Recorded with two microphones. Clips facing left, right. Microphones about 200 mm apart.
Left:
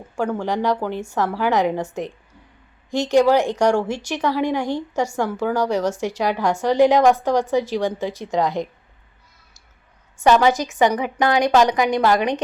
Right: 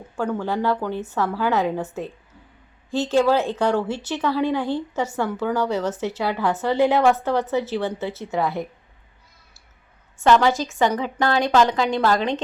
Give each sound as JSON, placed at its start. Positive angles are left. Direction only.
{"t": 0.2, "sound": "speech", "side_deg": 10}
{"t": 2.9, "sound": "speech", "side_deg": 15}
{"t": 10.2, "sound": "speech", "side_deg": 15}